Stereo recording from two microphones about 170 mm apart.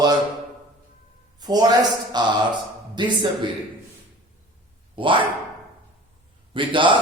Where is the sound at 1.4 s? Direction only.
25° right (ahead or behind).